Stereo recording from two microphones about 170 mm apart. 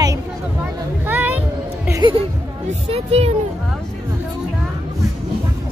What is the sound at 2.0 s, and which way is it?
Speech, 35° right (ahead or behind).